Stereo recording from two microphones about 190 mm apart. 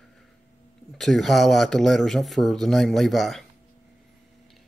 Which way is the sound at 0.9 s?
Centre (ahead or behind).